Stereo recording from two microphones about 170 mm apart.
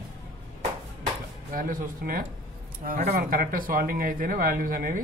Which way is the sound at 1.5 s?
55° right (ahead or behind).